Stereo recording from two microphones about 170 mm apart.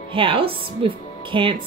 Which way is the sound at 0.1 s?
30° right (ahead or behind).